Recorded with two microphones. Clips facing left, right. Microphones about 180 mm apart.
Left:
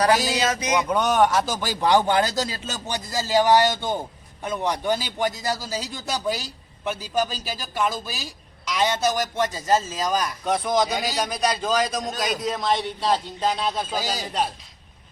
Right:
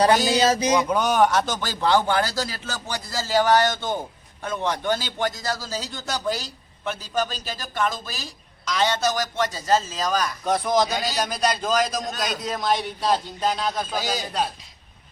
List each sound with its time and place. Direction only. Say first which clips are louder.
0.1 s a man's voice: right 1 dB; centre (ahead or behind)
0.3 s speech: right 4 dB; 30° right (ahead or behind)
0.9 s speech: even; centre (ahead or behind); by 10.3 s 20° left (ahead or behind)
10.4 s a man's voice: right 1 dB; centre (ahead or behind)
10.8 s a man's voice: even; 10° left (ahead or behind)
13.6 s speech: even; 25° left (ahead or behind)